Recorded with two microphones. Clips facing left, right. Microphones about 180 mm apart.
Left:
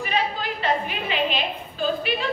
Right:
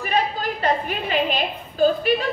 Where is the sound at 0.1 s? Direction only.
45° right (ahead or behind).